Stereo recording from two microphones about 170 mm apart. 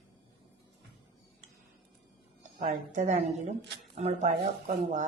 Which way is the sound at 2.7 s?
45° right (ahead or behind).